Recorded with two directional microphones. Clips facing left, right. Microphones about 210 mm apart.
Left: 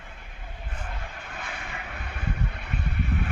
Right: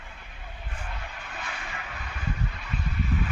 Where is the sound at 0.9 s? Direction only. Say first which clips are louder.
Left 1 dB; 50° left (ahead or behind).